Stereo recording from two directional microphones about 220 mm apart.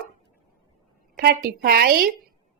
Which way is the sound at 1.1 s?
45° right (ahead or behind).